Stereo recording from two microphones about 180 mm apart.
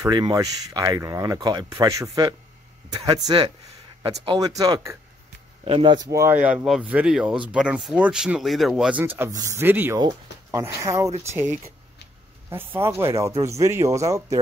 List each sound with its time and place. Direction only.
0.0 s speech: 20° right (ahead or behind)
12.4 s speech: 15° right (ahead or behind)